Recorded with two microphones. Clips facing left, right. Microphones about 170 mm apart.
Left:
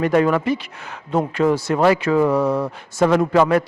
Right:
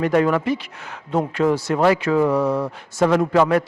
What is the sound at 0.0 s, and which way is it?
Speech, 15° left (ahead or behind).